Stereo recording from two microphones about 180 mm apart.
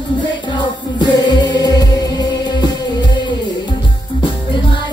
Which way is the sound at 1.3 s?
25° left (ahead or behind).